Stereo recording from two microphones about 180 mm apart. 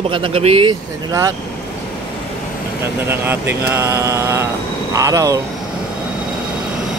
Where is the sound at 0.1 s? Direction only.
30° right (ahead or behind).